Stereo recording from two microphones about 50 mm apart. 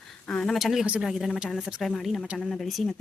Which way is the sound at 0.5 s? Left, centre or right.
Centre.